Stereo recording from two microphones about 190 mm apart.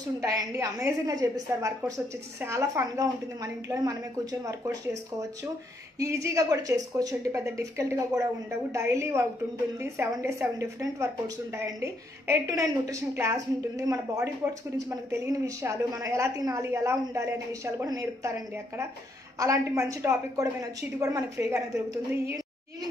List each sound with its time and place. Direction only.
0.2 s a woman's voice: 15° right (ahead or behind)
5.9 s a woman's voice: 15° right (ahead or behind)
19.3 s a woman's voice: 15° right (ahead or behind)